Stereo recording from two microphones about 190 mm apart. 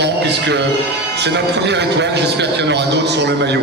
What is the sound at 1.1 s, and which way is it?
A man's voice, 65° right (ahead or behind).